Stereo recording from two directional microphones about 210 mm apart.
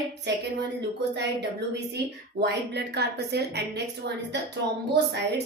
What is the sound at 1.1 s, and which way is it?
A woman's voice, 55° right (ahead or behind).